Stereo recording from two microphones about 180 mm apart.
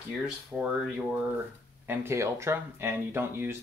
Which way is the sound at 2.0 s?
15° right (ahead or behind).